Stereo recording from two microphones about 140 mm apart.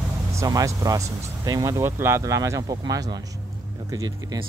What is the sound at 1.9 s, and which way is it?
Speech, 15° right (ahead or behind).